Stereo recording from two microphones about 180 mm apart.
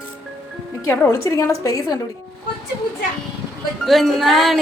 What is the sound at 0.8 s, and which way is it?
A woman's voice, 15° left (ahead or behind).